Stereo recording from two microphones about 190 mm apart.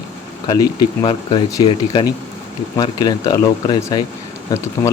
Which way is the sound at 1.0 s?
20° left (ahead or behind).